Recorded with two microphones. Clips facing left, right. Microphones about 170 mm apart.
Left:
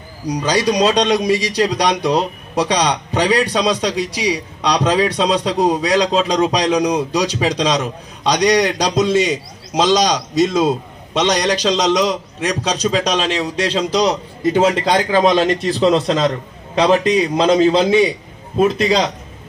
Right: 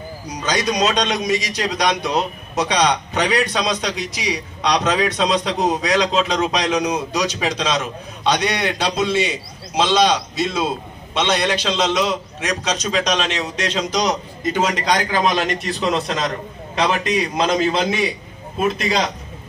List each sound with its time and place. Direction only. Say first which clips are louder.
0.3 s a man's voice: left 5 dB; 35° left (ahead or behind)